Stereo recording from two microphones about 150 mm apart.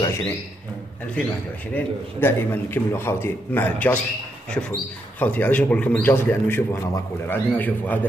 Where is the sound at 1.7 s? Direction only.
15° left (ahead or behind).